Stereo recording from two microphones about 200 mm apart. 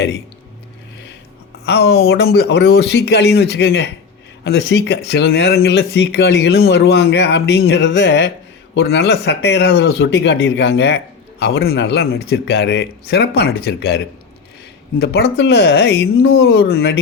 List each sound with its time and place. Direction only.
1.6 s a woman's voice: 55° left (ahead or behind)